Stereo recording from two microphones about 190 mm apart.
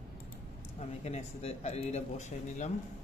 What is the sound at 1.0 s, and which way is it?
Speech, 35° left (ahead or behind).